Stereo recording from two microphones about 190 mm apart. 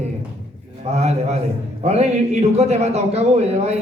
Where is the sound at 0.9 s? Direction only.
35° right (ahead or behind).